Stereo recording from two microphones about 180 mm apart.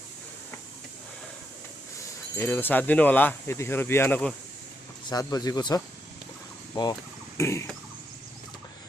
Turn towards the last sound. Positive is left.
turn(degrees=15)  # may be behind; listen again after turning